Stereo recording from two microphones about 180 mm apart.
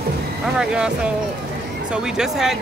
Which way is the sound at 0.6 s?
5° right (ahead or behind).